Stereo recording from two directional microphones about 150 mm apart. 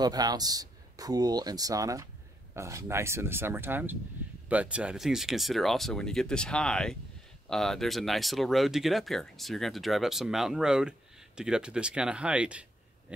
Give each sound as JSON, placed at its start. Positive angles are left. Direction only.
{"t": 0.0, "sound": "speech", "side_deg": -25}